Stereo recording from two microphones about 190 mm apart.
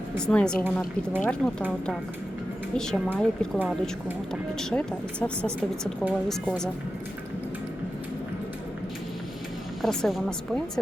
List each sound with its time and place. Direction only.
0.2 s speech: 5° left (ahead or behind)
2.7 s speech: 5° left (ahead or behind)
4.7 s speech: 5° left (ahead or behind)
9.8 s speech: centre (ahead or behind)